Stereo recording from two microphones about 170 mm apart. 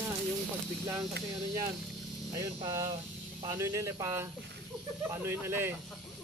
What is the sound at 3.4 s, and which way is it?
Speech, 20° right (ahead or behind).